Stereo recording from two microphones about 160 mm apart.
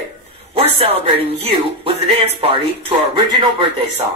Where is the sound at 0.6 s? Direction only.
35° right (ahead or behind).